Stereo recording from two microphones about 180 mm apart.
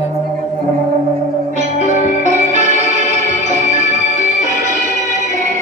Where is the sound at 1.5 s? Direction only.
40° right (ahead or behind).